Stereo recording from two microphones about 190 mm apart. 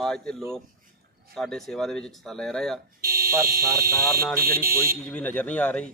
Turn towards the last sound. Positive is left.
turn(degrees=5)  # may be behind; listen again after turning